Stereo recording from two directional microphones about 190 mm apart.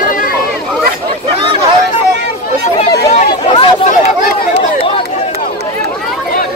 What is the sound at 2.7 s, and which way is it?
Chatter, 35° left (ahead or behind).